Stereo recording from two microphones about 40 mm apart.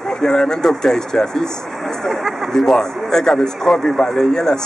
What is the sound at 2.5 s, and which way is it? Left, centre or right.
Speech, centre.